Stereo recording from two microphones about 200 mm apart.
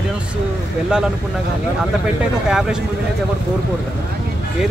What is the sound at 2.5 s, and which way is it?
Speech, centre (ahead or behind).